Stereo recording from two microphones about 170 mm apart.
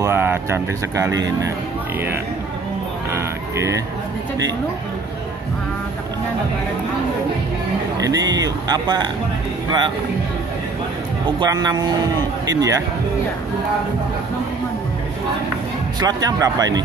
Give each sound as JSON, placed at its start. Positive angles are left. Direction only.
{"t": 0.0, "sound": "speech", "side_deg": -15}
{"t": 3.1, "sound": "a sound", "side_deg": -15}
{"t": 8.0, "sound": "speech", "side_deg": -20}
{"t": 11.3, "sound": "speech", "side_deg": -25}
{"t": 16.0, "sound": "speech", "side_deg": -25}